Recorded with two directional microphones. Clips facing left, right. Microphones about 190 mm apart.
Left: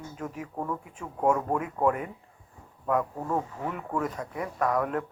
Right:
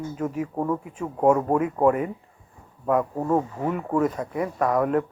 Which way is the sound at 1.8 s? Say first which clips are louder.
Right 5 dB; 20° right (ahead or behind).